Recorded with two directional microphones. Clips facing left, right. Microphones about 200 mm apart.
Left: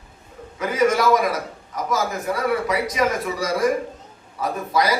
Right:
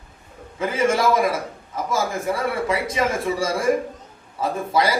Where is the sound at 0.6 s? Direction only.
25° right (ahead or behind).